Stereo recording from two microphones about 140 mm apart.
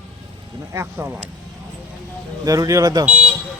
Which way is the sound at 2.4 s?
25° right (ahead or behind).